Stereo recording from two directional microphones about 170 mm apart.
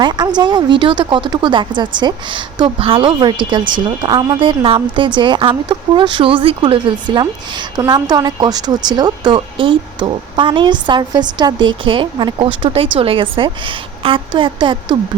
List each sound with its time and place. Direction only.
0.0 s a woman's voice: 25° right (ahead or behind)